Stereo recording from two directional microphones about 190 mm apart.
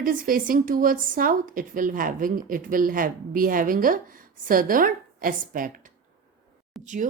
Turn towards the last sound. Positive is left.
turn(degrees=-40)  # may be behind; listen again after turning